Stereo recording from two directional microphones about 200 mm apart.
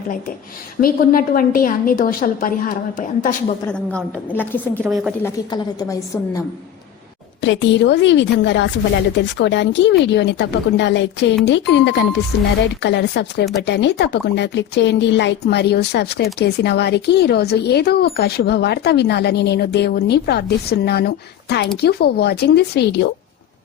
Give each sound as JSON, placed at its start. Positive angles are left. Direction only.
{"t": 0.8, "sound": "a woman's voice", "side_deg": 45}
{"t": 3.7, "sound": "a woman's voice", "side_deg": 5}
{"t": 4.8, "sound": "speech", "side_deg": -5}
{"t": 5.2, "sound": "a woman's voice", "side_deg": 15}
{"t": 7.4, "sound": "a woman's voice", "side_deg": 65}